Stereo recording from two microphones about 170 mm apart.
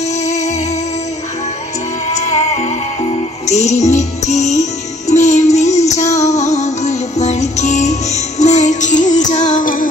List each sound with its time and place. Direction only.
0.2 s music: 40° left (ahead or behind)
2.0 s music: 40° left (ahead or behind)